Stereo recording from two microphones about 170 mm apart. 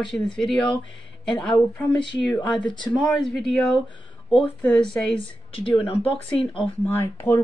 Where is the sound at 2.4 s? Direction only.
25° left (ahead or behind).